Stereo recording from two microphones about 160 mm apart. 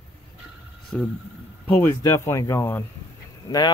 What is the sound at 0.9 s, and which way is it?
Speech, 5° left (ahead or behind).